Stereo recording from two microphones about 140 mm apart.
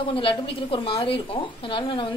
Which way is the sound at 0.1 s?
40° left (ahead or behind).